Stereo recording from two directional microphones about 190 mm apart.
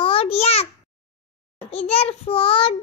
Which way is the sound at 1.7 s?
30° left (ahead or behind).